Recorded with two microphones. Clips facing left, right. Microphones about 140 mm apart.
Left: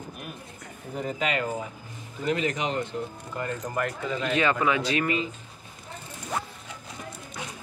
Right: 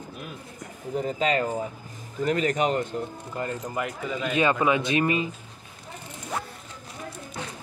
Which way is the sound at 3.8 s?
10° right (ahead or behind).